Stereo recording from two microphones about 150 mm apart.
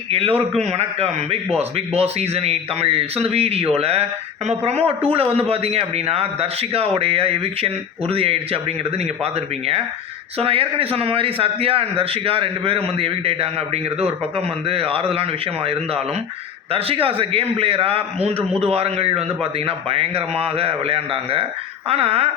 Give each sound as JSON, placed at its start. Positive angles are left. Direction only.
{"t": 0.1, "sound": "a man's voice", "side_deg": -40}